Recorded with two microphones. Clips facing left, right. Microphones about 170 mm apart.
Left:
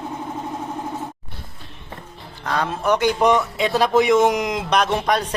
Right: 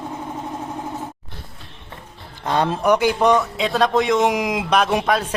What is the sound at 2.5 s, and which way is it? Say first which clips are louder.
Speech: right 4 dB; 30° right (ahead or behind).